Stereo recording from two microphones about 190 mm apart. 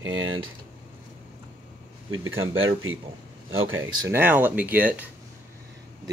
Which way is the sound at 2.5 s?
90° right.